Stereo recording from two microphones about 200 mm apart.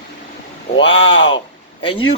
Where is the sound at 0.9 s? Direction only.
25° left (ahead or behind).